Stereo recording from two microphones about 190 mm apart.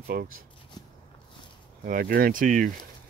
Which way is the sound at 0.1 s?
50° right (ahead or behind).